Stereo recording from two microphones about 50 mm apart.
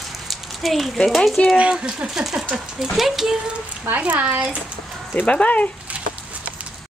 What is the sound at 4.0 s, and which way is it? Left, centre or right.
Speech, right.